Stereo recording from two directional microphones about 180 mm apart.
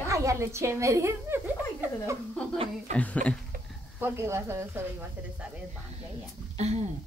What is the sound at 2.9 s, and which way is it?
Speech, 40° right (ahead or behind).